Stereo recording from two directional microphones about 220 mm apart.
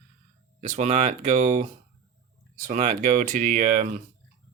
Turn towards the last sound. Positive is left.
turn(degrees=-35)  # may be behind; listen again after turning